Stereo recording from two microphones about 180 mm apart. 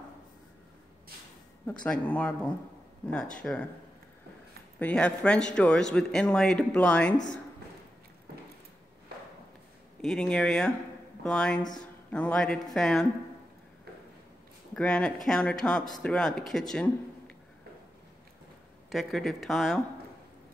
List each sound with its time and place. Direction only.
1.7 s speech: 5° left (ahead or behind)
4.7 s speech: 5° left (ahead or behind)
10.0 s speech: 5° left (ahead or behind)
14.7 s speech: 5° left (ahead or behind)
18.9 s speech: centre (ahead or behind)